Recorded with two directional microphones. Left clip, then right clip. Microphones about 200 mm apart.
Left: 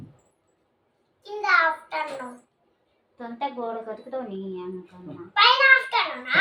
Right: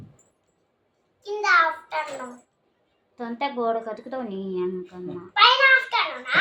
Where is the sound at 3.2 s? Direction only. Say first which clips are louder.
Right 3 dB; 60° right (ahead or behind).